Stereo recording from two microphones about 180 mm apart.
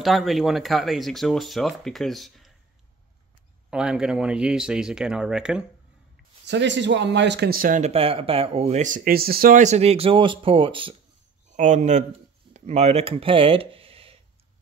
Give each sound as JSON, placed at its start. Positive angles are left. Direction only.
{"t": 0.0, "sound": "speech", "side_deg": 0}
{"t": 3.7, "sound": "speech", "side_deg": -5}
{"t": 6.4, "sound": "a man's voice", "side_deg": -75}
{"t": 7.9, "sound": "speech", "side_deg": -30}
{"t": 11.5, "sound": "speech", "side_deg": -45}